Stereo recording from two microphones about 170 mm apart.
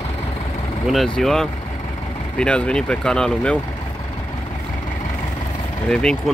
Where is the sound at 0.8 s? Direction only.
Centre (ahead or behind).